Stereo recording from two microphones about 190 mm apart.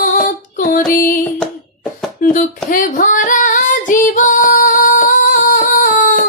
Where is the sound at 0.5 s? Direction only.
45° left (ahead or behind).